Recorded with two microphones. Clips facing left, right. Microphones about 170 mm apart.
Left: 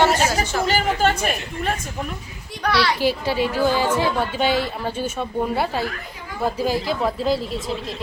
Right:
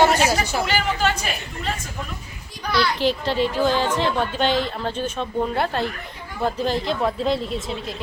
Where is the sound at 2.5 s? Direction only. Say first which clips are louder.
Left 2 dB; 70° left (ahead or behind).